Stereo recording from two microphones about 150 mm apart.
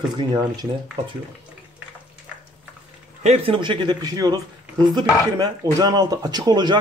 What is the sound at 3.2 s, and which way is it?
Speech, 40° right (ahead or behind).